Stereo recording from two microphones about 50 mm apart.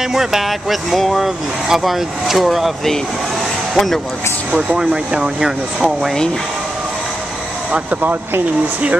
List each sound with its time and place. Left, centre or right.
0.0 s speech: centre
4.5 s speech: centre
7.7 s speech: right